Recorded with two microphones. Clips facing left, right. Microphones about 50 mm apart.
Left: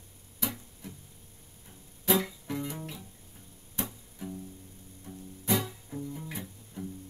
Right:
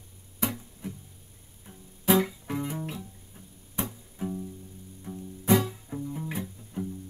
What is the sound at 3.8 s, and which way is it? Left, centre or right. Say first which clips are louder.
Music: right 4 dB; centre.